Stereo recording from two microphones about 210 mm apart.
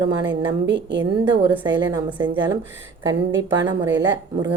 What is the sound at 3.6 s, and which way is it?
Speech, 20° right (ahead or behind).